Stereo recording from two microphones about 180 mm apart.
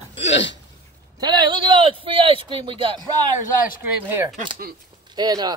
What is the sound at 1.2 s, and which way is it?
Speech, 25° right (ahead or behind).